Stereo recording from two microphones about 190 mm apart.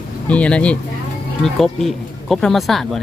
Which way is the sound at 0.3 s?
5° left (ahead or behind).